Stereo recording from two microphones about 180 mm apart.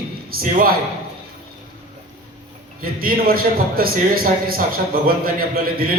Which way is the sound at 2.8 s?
55° right (ahead or behind).